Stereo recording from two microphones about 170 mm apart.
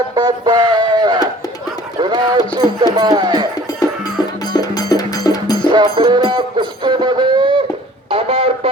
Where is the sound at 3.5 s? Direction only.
25° left (ahead or behind).